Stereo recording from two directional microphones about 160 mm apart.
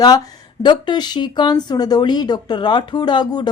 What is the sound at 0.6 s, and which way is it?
Speech, 30° left (ahead or behind).